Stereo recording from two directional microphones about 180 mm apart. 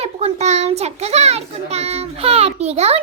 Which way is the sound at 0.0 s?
35° right (ahead or behind).